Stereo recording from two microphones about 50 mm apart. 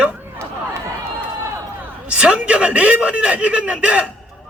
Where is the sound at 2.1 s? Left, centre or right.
Right.